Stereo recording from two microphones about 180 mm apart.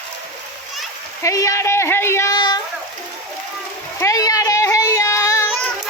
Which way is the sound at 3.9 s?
20° left (ahead or behind).